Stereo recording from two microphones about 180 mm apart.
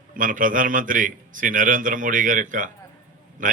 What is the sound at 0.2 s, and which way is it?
A man's voice, 50° right (ahead or behind).